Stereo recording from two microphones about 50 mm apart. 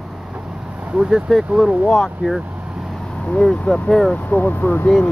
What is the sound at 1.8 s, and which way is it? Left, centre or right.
Speech, centre.